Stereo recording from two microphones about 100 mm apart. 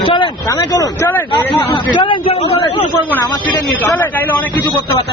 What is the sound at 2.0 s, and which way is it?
Speech, 50° left (ahead or behind).